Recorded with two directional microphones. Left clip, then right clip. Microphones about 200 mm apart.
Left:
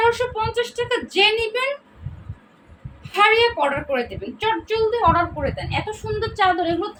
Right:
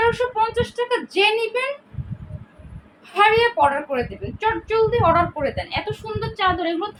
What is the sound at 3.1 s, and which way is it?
A child's voice, centre (ahead or behind).